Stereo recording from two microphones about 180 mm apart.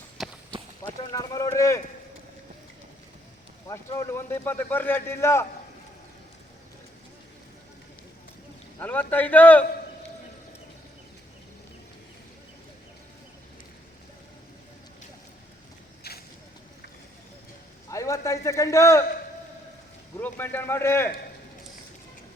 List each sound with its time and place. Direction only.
0.2 s run: centre (ahead or behind)
1.1 s a sound: 20° left (ahead or behind)
3.7 s a man's voice: 15° left (ahead or behind)
8.8 s a man's voice: 10° left (ahead or behind)
16.0 s vehicle: 65° left (ahead or behind)
17.8 s a sound: 20° left (ahead or behind)
20.1 s a man's voice: 10° left (ahead or behind)